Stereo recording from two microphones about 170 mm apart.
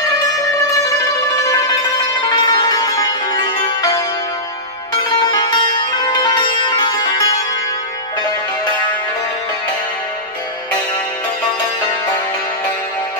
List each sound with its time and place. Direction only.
1.4 s music: 20° left (ahead or behind)
5.2 s sitar: 25° left (ahead or behind)